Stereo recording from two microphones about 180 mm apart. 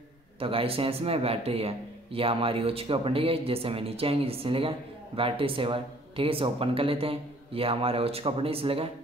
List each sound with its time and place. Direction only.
0.4 s a man's voice: 30° right (ahead or behind)